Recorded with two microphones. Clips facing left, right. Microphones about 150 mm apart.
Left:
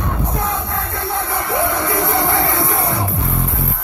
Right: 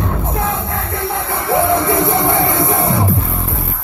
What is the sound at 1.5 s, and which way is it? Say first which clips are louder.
Music: right 5 dB; 25° right (ahead or behind).